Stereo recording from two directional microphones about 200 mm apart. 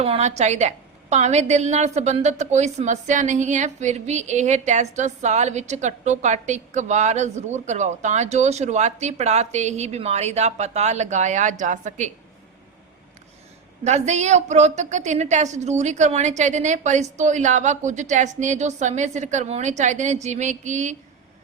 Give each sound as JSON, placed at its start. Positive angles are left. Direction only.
{"t": 0.0, "sound": "a woman's voice", "side_deg": -35}
{"t": 13.8, "sound": "a woman's voice", "side_deg": -35}